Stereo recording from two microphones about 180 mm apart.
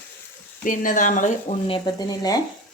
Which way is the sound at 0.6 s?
50° left (ahead or behind).